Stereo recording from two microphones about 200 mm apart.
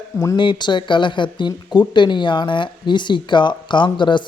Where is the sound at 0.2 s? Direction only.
20° left (ahead or behind).